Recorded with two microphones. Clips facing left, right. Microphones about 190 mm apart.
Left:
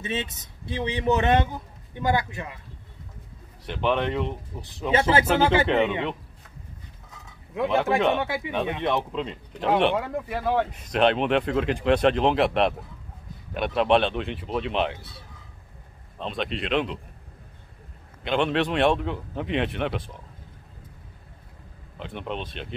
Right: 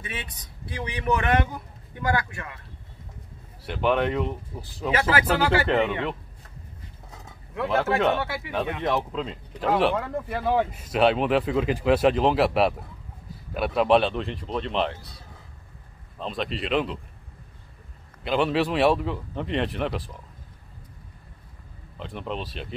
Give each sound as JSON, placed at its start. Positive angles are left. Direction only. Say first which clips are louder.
{"t": 0.0, "sound": "a man's voice", "louder": "left 7 dB", "side_deg": 25}
{"t": 3.6, "sound": "speech", "louder": "right 1 dB", "side_deg": -5}
{"t": 4.9, "sound": "a man's voice", "louder": "left 3 dB", "side_deg": 25}
{"t": 7.5, "sound": "speech", "louder": "left 1 dB", "side_deg": 15}
{"t": 8.8, "sound": "speech", "louder": "even", "side_deg": 0}
{"t": 16.2, "sound": "speech", "louder": "even", "side_deg": 0}
{"t": 18.2, "sound": "speech", "louder": "right 1 dB", "side_deg": -5}
{"t": 21.9, "sound": "speech", "louder": "even", "side_deg": 0}